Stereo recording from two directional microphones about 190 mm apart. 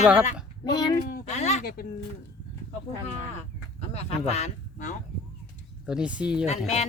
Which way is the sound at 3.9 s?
35° left (ahead or behind).